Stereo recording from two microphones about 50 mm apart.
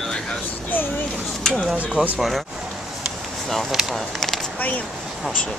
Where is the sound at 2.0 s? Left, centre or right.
Right.